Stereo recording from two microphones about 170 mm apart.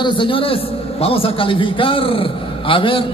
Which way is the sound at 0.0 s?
30° left (ahead or behind).